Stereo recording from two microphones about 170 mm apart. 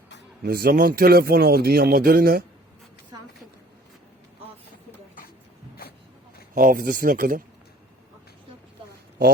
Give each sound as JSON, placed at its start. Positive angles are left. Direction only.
{"t": 0.4, "sound": "a man's voice", "side_deg": -65}
{"t": 6.5, "sound": "a man's voice", "side_deg": -55}